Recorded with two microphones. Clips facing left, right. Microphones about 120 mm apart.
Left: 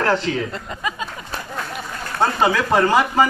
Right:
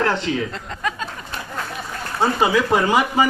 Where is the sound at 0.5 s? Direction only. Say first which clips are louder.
Even; 5° left (ahead or behind).